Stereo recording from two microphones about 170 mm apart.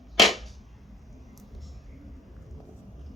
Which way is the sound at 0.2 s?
Centre (ahead or behind).